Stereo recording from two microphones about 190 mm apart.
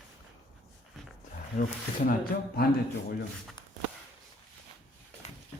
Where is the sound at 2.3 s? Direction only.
55° left (ahead or behind).